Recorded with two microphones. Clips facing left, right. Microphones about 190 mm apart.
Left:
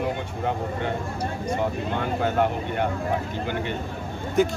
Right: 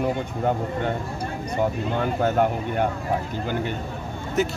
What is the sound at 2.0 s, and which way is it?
Speech, 45° right (ahead or behind).